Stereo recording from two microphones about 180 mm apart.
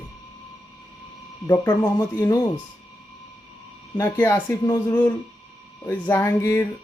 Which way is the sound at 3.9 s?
15° left (ahead or behind).